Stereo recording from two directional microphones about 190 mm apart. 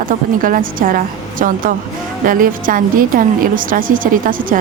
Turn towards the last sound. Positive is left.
turn(degrees=-45)  # may be behind; listen again after turning